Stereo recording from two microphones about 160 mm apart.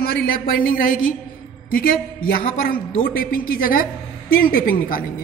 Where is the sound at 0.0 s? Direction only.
70° left (ahead or behind).